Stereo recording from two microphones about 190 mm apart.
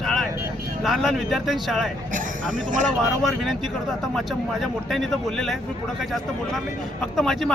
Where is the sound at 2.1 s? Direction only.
45° right (ahead or behind).